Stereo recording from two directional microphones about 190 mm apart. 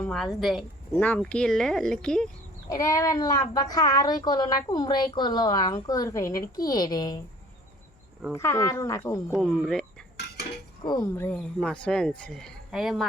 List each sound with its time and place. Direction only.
0.0 s speech: centre (ahead or behind)
2.7 s a woman's voice: 15° left (ahead or behind)
8.3 s speech: 15° left (ahead or behind)
9.3 s speech: centre (ahead or behind)
10.8 s speech: 15° left (ahead or behind); by 13.1 s centre (ahead or behind)